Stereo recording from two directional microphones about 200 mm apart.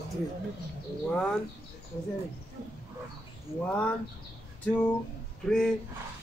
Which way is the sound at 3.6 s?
5° left (ahead or behind).